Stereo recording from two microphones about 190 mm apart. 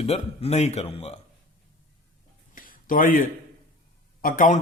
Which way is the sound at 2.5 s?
45° left (ahead or behind).